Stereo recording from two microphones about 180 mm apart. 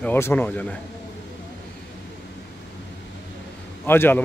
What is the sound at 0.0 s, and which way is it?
Speech, 10° left (ahead or behind).